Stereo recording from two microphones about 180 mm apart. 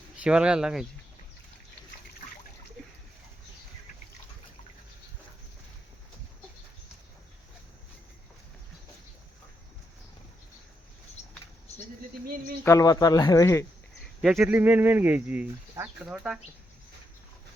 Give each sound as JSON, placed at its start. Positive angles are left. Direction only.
{"t": 0.2, "sound": "speech", "side_deg": -5}
{"t": 12.6, "sound": "speech", "side_deg": 20}
{"t": 14.3, "sound": "speech", "side_deg": -10}